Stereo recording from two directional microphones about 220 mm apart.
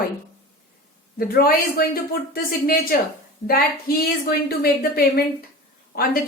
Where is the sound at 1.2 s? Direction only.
45° left (ahead or behind).